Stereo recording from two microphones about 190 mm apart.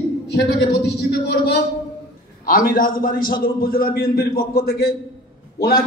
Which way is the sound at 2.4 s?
50° left (ahead or behind).